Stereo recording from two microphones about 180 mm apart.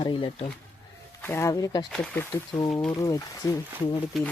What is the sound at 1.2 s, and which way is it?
Speech, 15° left (ahead or behind).